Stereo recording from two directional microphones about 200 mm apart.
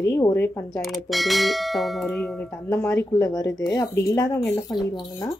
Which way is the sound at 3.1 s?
15° left (ahead or behind).